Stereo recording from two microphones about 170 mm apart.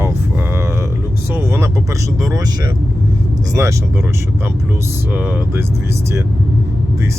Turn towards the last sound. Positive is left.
turn(degrees=-10)  # may be behind; listen again after turning